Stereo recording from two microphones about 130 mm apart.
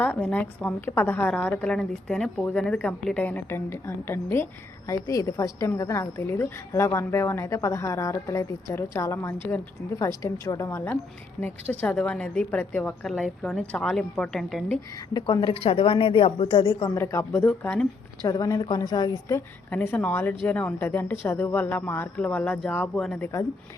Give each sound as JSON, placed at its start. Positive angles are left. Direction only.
{"t": 0.0, "sound": "a woman's voice", "side_deg": 10}
{"t": 15.1, "sound": "a woman's voice", "side_deg": 35}
{"t": 15.5, "sound": "a woman's voice", "side_deg": 45}
{"t": 16.9, "sound": "a woman's voice", "side_deg": 20}
{"t": 18.2, "sound": "a woman's voice", "side_deg": 30}
{"t": 19.7, "sound": "a woman's voice", "side_deg": 15}